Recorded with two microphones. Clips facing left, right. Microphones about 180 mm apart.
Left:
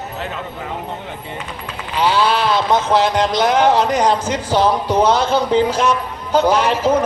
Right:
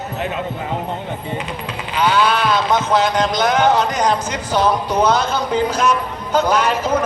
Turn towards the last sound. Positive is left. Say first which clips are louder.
# left 2 dB
turn(degrees=30)  # may be behind; listen again after turning